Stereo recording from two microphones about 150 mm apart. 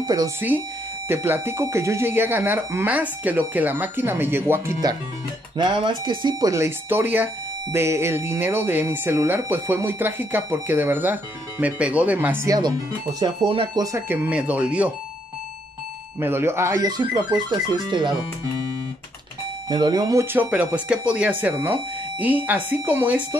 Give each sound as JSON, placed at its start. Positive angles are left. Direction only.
{"t": 0.0, "sound": "speech", "side_deg": -25}
{"t": 1.0, "sound": "speech", "side_deg": -15}
{"t": 5.6, "sound": "speech", "side_deg": -35}
{"t": 6.5, "sound": "speech", "side_deg": -15}
{"t": 12.4, "sound": "speech", "side_deg": -25}
{"t": 13.9, "sound": "speech", "side_deg": -15}
{"t": 16.2, "sound": "speech", "side_deg": -15}
{"t": 19.7, "sound": "speech", "side_deg": -30}
{"t": 20.3, "sound": "speech", "side_deg": -10}